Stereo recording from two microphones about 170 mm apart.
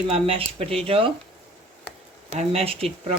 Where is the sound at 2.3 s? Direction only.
35° right (ahead or behind).